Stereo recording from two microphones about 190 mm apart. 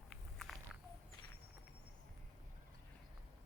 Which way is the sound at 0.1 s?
Centre (ahead or behind).